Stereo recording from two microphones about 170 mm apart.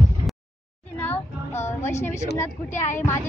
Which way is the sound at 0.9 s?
10° left (ahead or behind).